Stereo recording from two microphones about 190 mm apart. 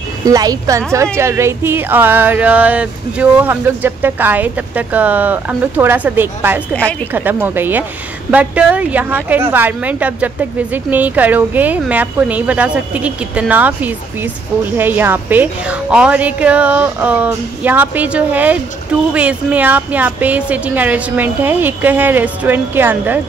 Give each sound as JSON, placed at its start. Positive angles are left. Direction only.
{"t": 0.2, "sound": "a woman's voice", "side_deg": -20}